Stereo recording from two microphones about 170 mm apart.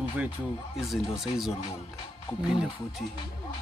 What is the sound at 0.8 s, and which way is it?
Speech, centre (ahead or behind).